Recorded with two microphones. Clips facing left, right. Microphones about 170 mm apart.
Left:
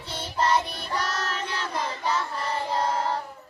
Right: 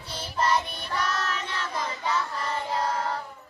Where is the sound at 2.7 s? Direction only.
30° left (ahead or behind).